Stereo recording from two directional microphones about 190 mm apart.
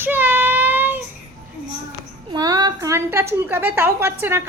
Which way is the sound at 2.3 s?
20° right (ahead or behind).